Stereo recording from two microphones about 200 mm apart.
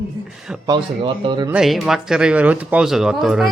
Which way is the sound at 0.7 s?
25° right (ahead or behind).